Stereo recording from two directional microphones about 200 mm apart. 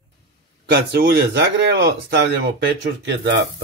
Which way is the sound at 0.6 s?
55° right (ahead or behind).